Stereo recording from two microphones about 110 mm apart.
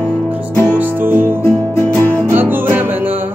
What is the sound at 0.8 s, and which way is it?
Music, 20° right (ahead or behind).